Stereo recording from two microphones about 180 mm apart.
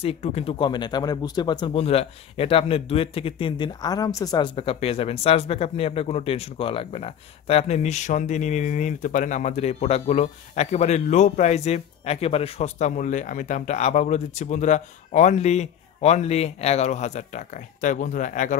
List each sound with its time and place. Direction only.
0.0 s speech: 35° left (ahead or behind)
4.6 s speech: 35° left (ahead or behind)